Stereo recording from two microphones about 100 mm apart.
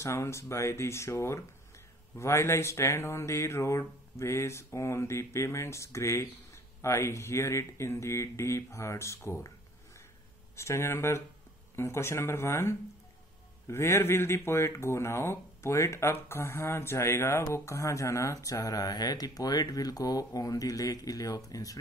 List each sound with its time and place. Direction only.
0.0 s speech: 30° left (ahead or behind)
10.5 s speech: 25° left (ahead or behind)